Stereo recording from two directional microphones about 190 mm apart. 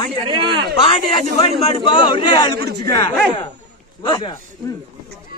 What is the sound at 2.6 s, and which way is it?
Speech, 55° right (ahead or behind).